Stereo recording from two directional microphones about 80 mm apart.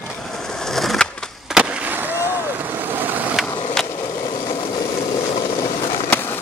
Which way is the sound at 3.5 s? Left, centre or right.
Left.